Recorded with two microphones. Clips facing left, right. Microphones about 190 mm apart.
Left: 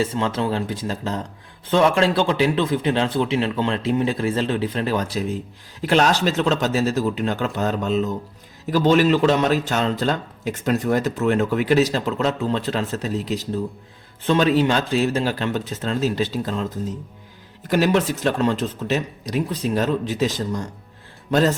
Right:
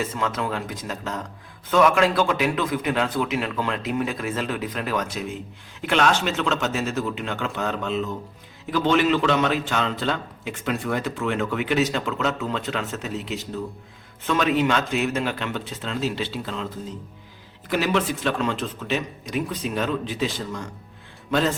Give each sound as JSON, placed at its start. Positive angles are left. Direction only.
{"t": 0.0, "sound": "a man's voice", "side_deg": 30}
{"t": 17.7, "sound": "a man's voice", "side_deg": 45}